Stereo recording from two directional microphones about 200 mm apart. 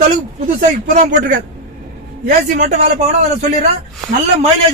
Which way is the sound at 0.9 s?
40° right (ahead or behind).